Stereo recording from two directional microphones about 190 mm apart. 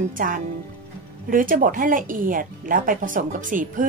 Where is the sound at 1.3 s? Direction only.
45° right (ahead or behind).